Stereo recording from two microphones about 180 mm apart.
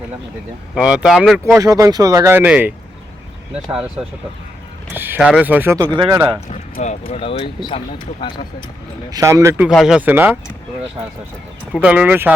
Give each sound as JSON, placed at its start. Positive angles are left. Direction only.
{"t": 0.8, "sound": "speech", "side_deg": -5}
{"t": 1.5, "sound": "speech", "side_deg": -20}
{"t": 6.7, "sound": "speech", "side_deg": 50}
{"t": 7.1, "sound": "speech", "side_deg": 35}
{"t": 9.0, "sound": "speech", "side_deg": -20}
{"t": 9.6, "sound": "speech", "side_deg": -5}
{"t": 11.7, "sound": "speech", "side_deg": -5}